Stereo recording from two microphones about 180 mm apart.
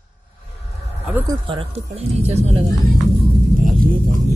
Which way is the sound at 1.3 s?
30° right (ahead or behind).